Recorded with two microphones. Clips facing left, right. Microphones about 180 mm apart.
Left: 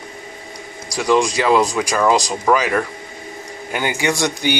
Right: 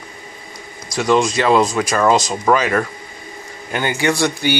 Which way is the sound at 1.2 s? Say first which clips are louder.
Right 1 dB; 10° left (ahead or behind).